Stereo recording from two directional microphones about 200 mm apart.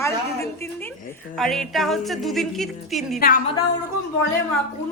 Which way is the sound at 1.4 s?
Centre (ahead or behind).